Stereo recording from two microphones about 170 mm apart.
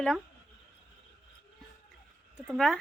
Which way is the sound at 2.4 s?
Centre (ahead or behind).